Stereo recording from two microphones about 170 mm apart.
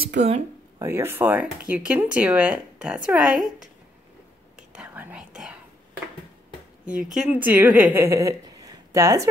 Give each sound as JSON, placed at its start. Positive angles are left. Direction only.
{"t": 0.1, "sound": "speech", "side_deg": -45}
{"t": 0.7, "sound": "speech", "side_deg": -15}
{"t": 4.6, "sound": "whispering", "side_deg": -5}
{"t": 7.2, "sound": "a woman's voice", "side_deg": -10}